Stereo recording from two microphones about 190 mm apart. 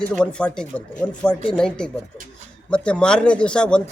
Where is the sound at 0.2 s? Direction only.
5° left (ahead or behind).